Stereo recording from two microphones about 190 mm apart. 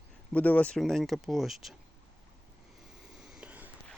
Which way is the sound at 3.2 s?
5° right (ahead or behind).